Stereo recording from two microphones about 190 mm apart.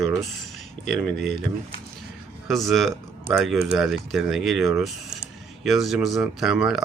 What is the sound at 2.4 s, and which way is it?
Speech, centre (ahead or behind).